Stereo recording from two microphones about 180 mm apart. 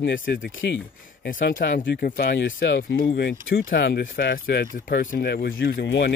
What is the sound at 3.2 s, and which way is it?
Speech, 65° left (ahead or behind).